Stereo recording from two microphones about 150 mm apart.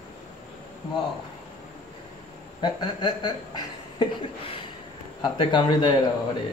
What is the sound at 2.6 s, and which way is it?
Speech, 30° left (ahead or behind).